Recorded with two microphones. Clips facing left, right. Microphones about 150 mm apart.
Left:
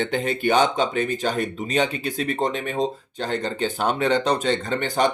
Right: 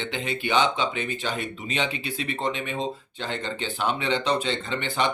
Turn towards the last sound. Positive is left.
turn(degrees=40)  # may be behind; listen again after turning